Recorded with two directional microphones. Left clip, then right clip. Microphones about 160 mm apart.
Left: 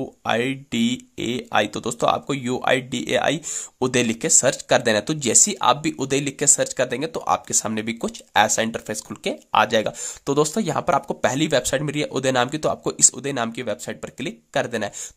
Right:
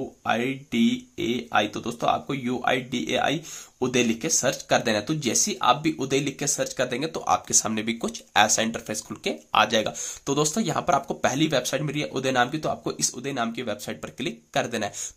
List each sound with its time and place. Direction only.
0.2 s speech: 40° left (ahead or behind)